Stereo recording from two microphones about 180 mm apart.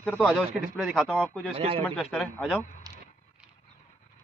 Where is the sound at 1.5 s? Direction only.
30° right (ahead or behind).